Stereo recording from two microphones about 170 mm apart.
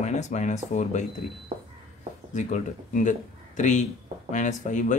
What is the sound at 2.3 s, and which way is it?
Speech, 45° left (ahead or behind).